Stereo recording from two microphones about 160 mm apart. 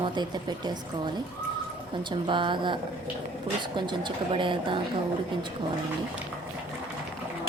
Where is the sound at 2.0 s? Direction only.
30° right (ahead or behind).